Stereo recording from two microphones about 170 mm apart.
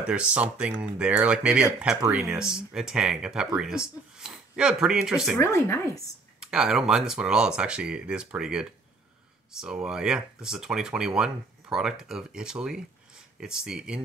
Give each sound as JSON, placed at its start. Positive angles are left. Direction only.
{"t": 0.0, "sound": "speech", "side_deg": -5}
{"t": 5.4, "sound": "speech", "side_deg": 15}
{"t": 6.4, "sound": "speech", "side_deg": -5}